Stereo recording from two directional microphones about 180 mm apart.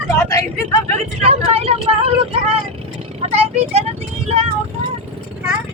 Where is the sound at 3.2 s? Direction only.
35° right (ahead or behind).